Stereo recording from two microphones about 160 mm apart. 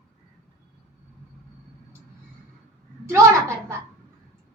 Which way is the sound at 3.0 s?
15° right (ahead or behind).